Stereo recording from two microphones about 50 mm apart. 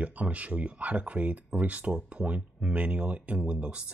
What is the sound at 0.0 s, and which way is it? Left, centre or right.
Speech, right.